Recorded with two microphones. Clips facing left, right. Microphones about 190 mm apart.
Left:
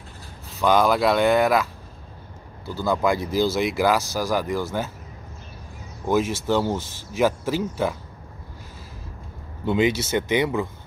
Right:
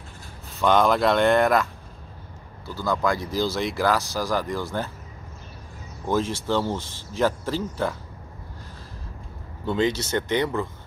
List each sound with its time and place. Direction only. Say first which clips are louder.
0.5 s speech: left 1 dB; centre (ahead or behind)
2.9 s speech: left 2 dB; 10° left (ahead or behind)
6.0 s speech: left 3 dB; 10° left (ahead or behind)
9.7 s speech: left 2 dB; 10° left (ahead or behind)